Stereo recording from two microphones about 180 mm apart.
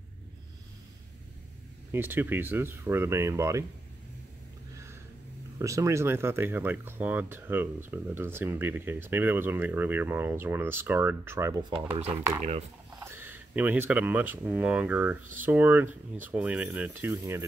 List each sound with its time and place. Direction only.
1.9 s speech: 10° right (ahead or behind)
5.6 s speech: 15° right (ahead or behind)
12.4 s speech: 40° right (ahead or behind)
13.0 s speech: 10° right (ahead or behind)